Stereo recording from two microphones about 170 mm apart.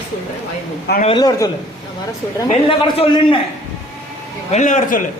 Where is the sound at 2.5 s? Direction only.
35° left (ahead or behind).